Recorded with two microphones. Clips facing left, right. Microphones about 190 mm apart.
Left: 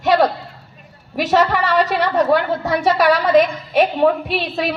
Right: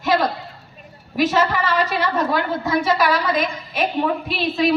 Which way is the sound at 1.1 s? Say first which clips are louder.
Left 2 dB; 65° left (ahead or behind).